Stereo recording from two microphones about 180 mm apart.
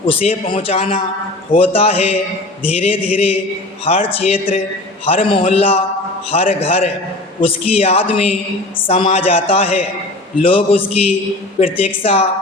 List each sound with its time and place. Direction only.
0.1 s a man's voice: 30° left (ahead or behind)